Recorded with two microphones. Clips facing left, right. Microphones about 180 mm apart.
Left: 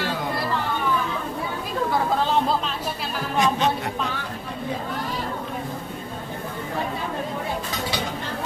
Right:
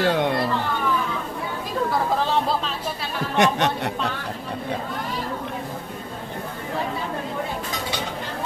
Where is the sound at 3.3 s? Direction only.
70° right (ahead or behind).